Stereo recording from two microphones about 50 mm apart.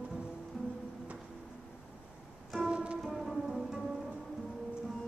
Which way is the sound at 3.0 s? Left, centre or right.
Centre.